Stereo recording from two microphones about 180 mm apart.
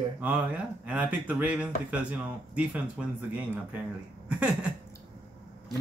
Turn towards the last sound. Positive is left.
turn(degrees=-5)  # may be behind; listen again after turning